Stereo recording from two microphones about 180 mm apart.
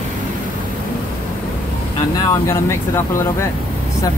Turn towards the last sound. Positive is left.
turn(degrees=15)  # may be behind; listen again after turning